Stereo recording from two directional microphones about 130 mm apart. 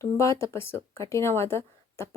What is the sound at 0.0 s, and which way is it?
Speech, 25° left (ahead or behind).